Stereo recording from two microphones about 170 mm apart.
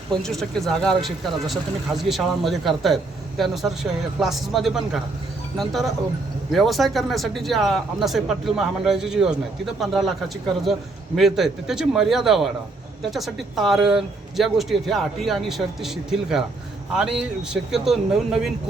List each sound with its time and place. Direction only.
0.2 s speech: centre (ahead or behind)
11.2 s speech: centre (ahead or behind)